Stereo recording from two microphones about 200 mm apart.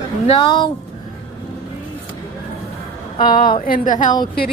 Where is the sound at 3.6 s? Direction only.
40° left (ahead or behind).